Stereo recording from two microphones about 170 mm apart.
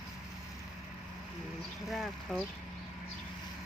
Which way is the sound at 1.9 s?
Centre (ahead or behind).